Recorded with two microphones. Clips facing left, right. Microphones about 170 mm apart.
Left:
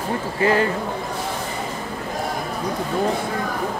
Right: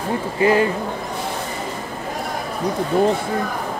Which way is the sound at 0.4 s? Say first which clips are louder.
Right 3 dB; 15° right (ahead or behind).